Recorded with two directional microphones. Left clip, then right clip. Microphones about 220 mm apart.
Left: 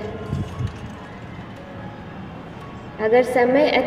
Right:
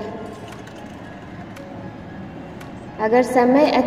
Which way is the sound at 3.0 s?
20° right (ahead or behind).